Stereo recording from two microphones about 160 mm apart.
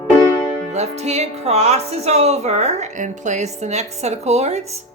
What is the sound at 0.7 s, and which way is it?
A woman's voice, 45° right (ahead or behind).